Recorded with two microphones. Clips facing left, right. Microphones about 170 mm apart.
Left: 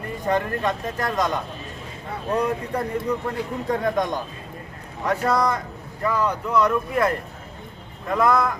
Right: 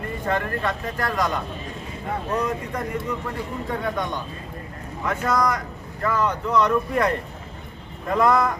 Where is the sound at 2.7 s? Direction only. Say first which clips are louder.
Left 3 dB; 35° left (ahead or behind).